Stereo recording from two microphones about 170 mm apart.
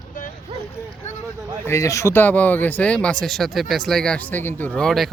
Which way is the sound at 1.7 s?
20° left (ahead or behind).